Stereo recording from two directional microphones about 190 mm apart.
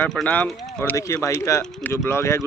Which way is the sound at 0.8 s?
15° left (ahead or behind).